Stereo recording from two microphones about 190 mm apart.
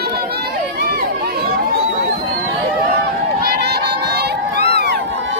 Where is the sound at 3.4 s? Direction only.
55° right (ahead or behind).